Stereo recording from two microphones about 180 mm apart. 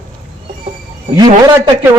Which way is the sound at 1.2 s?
20° right (ahead or behind).